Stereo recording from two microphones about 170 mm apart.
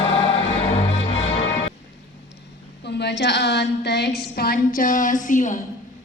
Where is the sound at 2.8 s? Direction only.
80° left.